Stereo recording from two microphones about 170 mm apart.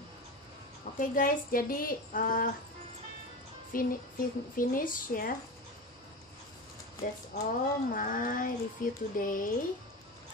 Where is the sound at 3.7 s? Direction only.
55° left (ahead or behind).